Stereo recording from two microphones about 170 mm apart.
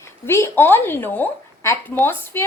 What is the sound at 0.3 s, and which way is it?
A woman's voice, 15° left (ahead or behind).